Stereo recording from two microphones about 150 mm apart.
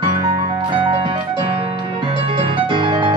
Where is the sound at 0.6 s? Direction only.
35° right (ahead or behind).